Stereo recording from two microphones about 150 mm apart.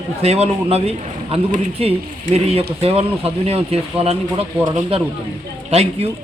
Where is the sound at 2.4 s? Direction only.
40° right (ahead or behind).